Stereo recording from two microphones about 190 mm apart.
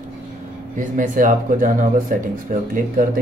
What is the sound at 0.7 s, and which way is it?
Speech, 45° right (ahead or behind).